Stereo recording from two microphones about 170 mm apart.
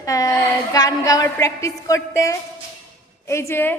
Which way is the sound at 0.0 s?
20° left (ahead or behind).